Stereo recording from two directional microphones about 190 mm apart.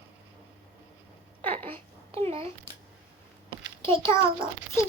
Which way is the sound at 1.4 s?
10° left (ahead or behind).